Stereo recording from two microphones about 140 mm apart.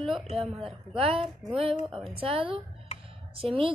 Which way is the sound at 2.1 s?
40° right (ahead or behind).